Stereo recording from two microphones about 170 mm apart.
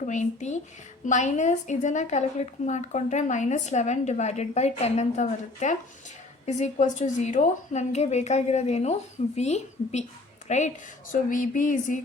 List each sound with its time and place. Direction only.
0.0 s a woman's voice: 45° left (ahead or behind)